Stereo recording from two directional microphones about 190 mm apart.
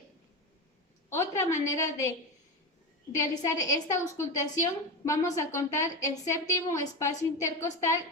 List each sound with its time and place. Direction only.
1.1 s a woman's voice: 15° left (ahead or behind)
3.2 s a woman's voice: 20° left (ahead or behind)